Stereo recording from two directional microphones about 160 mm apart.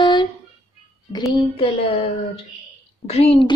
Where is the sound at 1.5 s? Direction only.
35° left (ahead or behind).